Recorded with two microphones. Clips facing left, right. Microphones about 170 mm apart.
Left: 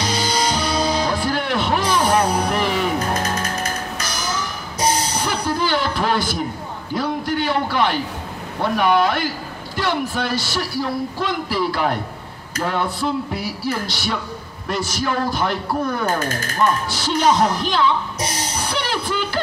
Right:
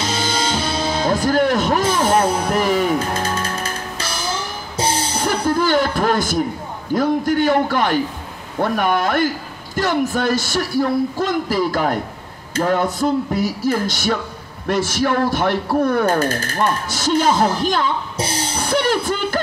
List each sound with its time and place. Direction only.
0.0 s music: 25° right (ahead or behind)
1.0 s music: 45° right (ahead or behind)
3.1 s music: 30° right (ahead or behind)
5.2 s music: 50° right (ahead or behind)
6.9 s speech: 45° right (ahead or behind)
18.1 s music: 30° right (ahead or behind)
18.6 s music: 50° right (ahead or behind)